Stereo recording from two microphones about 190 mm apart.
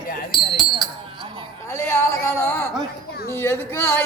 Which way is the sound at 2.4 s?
15° left (ahead or behind).